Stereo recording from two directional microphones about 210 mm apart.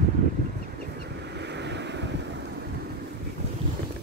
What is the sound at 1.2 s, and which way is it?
Wind, 55° right (ahead or behind).